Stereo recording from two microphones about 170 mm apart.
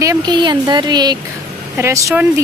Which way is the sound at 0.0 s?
20° right (ahead or behind).